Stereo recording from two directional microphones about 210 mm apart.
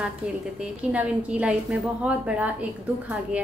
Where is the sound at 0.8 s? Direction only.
5° right (ahead or behind).